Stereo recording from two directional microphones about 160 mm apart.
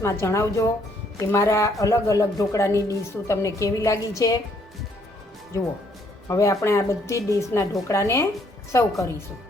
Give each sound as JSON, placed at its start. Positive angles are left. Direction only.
{"t": 0.0, "sound": "a woman's voice", "side_deg": 15}
{"t": 6.2, "sound": "a woman's voice", "side_deg": 20}